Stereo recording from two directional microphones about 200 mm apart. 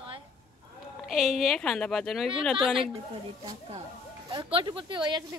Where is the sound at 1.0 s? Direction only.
Centre (ahead or behind).